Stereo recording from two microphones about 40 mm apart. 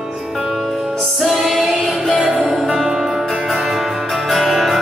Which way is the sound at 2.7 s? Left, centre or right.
Centre.